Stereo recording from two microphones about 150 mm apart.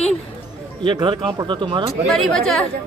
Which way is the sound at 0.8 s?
30° right (ahead or behind).